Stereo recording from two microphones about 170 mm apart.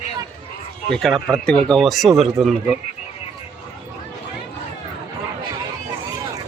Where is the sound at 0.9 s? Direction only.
Centre (ahead or behind).